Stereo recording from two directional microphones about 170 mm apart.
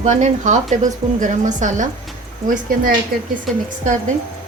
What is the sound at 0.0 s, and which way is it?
A woman's voice, 45° right (ahead or behind).